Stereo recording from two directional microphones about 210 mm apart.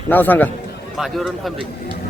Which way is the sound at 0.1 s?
10° left (ahead or behind).